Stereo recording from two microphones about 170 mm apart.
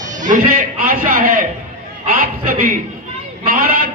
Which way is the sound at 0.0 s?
45° right (ahead or behind).